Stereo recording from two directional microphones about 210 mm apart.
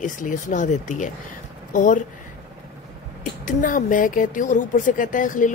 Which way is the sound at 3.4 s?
40° left (ahead or behind).